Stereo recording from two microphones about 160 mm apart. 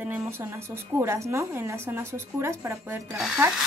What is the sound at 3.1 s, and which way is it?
Speech, centre (ahead or behind).